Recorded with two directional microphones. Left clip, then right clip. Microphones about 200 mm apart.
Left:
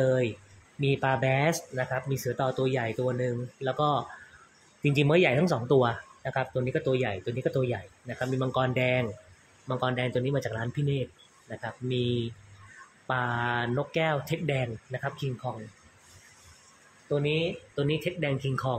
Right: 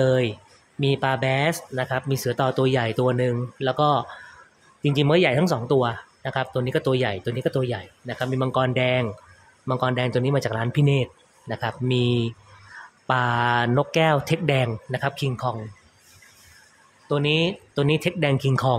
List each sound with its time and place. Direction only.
0.0 s speech: 20° right (ahead or behind)
1.9 s speech: 20° right (ahead or behind)
17.1 s speech: 30° right (ahead or behind)